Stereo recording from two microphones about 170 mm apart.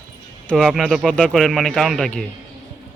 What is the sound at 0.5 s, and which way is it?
Speech, centre (ahead or behind).